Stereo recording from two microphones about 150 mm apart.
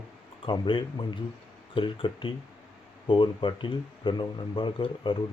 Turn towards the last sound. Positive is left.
turn(degrees=35)  # may be behind; listen again after turning